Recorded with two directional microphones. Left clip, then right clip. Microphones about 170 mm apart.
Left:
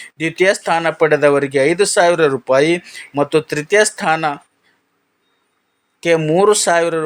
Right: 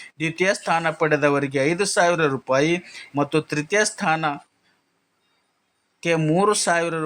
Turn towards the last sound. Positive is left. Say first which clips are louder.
# left 7 dB
turn(degrees=20)  # may be behind; listen again after turning